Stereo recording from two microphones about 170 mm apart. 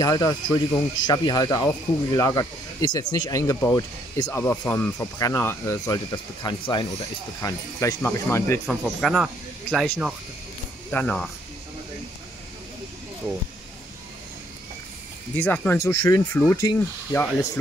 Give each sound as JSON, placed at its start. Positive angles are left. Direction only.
{"t": 0.0, "sound": "speech", "side_deg": 20}
{"t": 6.4, "sound": "speech", "side_deg": 25}
{"t": 8.6, "sound": "speech", "side_deg": 0}
{"t": 10.9, "sound": "speech", "side_deg": 5}
{"t": 15.3, "sound": "speech", "side_deg": 10}